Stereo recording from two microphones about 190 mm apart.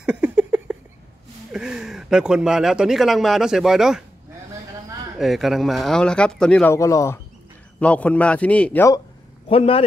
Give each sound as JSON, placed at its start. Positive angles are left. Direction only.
{"t": 0.0, "sound": "a sound", "side_deg": -5}
{"t": 1.5, "sound": "speech", "side_deg": -5}
{"t": 5.2, "sound": "a man's voice", "side_deg": 0}
{"t": 9.5, "sound": "speech", "side_deg": 30}